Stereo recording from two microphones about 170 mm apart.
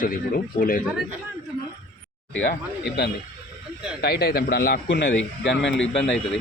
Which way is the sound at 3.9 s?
70° left (ahead or behind).